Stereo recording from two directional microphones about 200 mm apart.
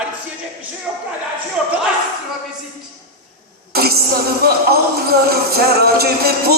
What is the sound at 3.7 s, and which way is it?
Speech, 50° right (ahead or behind).